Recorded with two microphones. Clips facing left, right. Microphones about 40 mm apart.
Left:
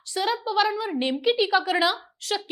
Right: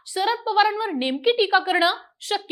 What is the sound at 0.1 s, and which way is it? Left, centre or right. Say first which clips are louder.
A woman's voice: right 3 dB; centre.